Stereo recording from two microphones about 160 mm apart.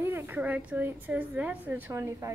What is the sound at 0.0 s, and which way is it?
Speech, 15° right (ahead or behind).